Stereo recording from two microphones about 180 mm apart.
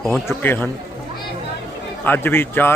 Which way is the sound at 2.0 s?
10° left (ahead or behind).